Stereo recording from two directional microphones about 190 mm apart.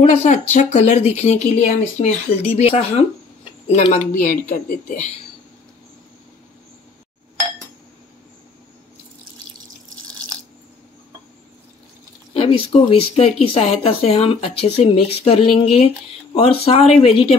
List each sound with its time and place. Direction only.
0.0 s speech: 35° left (ahead or behind)
4.2 s speech: 45° left (ahead or behind)
12.4 s speech: 30° left (ahead or behind)